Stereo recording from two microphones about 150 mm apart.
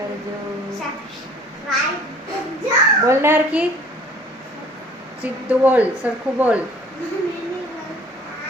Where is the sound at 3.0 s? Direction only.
15° right (ahead or behind).